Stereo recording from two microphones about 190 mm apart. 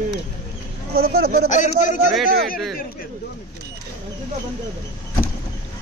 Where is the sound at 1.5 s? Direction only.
40° left (ahead or behind).